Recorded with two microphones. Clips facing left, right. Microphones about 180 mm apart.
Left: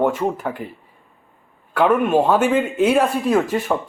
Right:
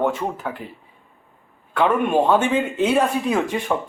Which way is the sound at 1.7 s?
5° left (ahead or behind).